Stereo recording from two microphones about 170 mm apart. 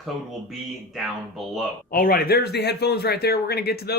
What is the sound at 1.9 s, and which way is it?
Speech, 60° left (ahead or behind).